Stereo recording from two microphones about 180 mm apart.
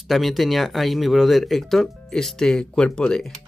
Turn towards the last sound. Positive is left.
turn(degrees=5)  # may be behind; listen again after turning